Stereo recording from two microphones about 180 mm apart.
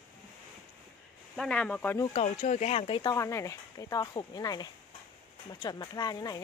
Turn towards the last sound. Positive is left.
turn(degrees=20)  # may be behind; listen again after turning